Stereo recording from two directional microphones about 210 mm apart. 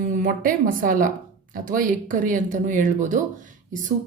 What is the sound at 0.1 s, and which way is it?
A woman's voice, 40° right (ahead or behind).